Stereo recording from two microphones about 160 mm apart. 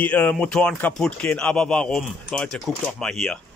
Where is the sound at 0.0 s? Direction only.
10° left (ahead or behind).